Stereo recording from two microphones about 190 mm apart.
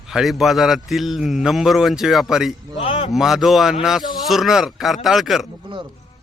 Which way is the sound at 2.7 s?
35° left (ahead or behind).